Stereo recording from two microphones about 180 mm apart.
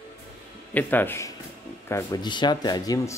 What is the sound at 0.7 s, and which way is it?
Speech, 10° left (ahead or behind).